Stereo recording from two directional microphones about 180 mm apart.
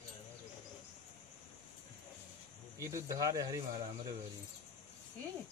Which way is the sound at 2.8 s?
15° right (ahead or behind).